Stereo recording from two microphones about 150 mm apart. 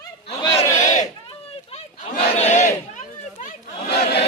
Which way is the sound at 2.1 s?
45° left (ahead or behind).